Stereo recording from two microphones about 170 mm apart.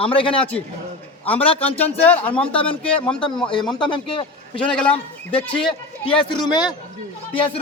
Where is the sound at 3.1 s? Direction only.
5° left (ahead or behind).